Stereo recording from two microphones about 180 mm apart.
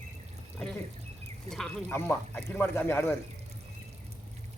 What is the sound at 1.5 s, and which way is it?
A man's voice, centre (ahead or behind).